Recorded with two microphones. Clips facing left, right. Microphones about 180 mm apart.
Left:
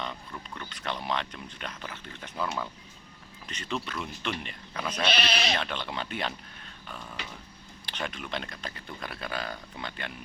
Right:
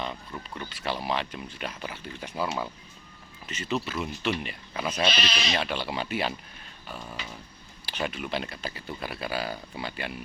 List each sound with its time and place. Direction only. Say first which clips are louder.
0.0 s speech: right 3 dB; 5° right (ahead or behind)
5.2 s speech: left 1 dB; 60° left (ahead or behind)
5.5 s speech: right 4 dB; 10° right (ahead or behind)
6.8 s a sound: right 3 dB; 5° right (ahead or behind)
7.9 s speech: right 4 dB; 5° right (ahead or behind)